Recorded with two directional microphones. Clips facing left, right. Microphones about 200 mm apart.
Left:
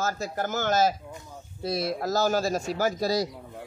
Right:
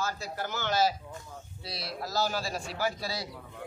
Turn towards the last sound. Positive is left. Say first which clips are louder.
# left 8 dB
turn(degrees=40)  # may be behind; listen again after turning